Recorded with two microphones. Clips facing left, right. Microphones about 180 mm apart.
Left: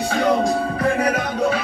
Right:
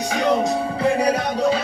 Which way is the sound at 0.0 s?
15° right (ahead or behind).